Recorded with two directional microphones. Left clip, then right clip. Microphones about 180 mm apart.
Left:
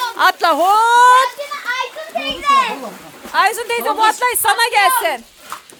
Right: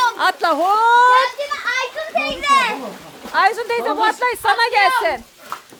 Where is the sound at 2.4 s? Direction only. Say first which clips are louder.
Left 2 dB; 15° right (ahead or behind).